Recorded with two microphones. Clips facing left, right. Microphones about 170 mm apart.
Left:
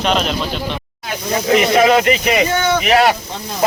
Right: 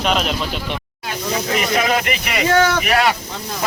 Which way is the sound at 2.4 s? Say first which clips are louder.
Right 1 dB; 90° right.